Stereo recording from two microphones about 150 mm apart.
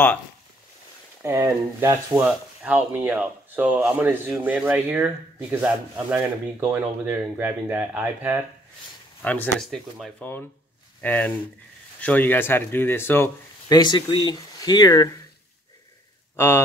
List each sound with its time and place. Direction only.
1.2 s speech: 20° right (ahead or behind)
9.2 s speech: 10° left (ahead or behind)
13.7 s speech: 30° left (ahead or behind)
16.3 s speech: 20° left (ahead or behind)